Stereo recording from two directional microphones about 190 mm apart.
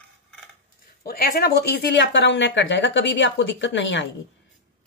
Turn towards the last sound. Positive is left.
turn(degrees=70)  # may be behind; listen again after turning